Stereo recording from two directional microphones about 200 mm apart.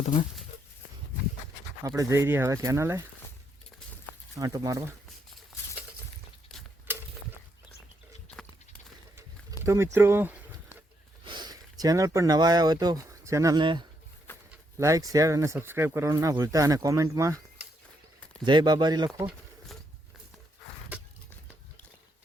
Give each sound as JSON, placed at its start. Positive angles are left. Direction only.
{"t": 2.0, "sound": "speech", "side_deg": -15}
{"t": 4.4, "sound": "speech", "side_deg": -15}
{"t": 9.1, "sound": "bird", "side_deg": -15}
{"t": 11.3, "sound": "speech", "side_deg": -20}
{"t": 14.3, "sound": "a sound", "side_deg": 10}
{"t": 14.8, "sound": "speech", "side_deg": -15}